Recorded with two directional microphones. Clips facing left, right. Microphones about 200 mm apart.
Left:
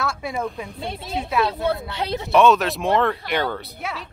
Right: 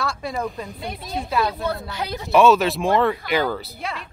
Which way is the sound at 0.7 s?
25° left (ahead or behind).